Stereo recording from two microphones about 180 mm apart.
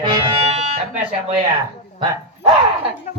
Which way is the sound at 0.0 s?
25° right (ahead or behind).